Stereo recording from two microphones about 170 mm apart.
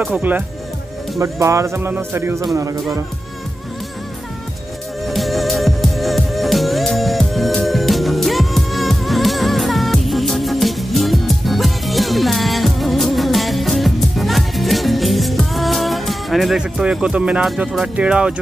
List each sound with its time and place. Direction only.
0.0 s speech: 10° right (ahead or behind)
5.0 s music: centre (ahead or behind)